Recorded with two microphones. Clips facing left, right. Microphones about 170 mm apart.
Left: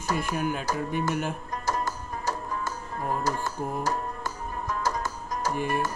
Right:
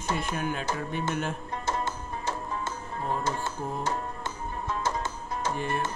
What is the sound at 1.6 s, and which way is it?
Music, 25° right (ahead or behind).